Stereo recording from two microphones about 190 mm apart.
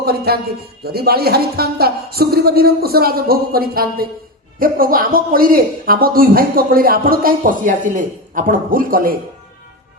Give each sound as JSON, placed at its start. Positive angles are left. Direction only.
{"t": 0.0, "sound": "speech", "side_deg": -55}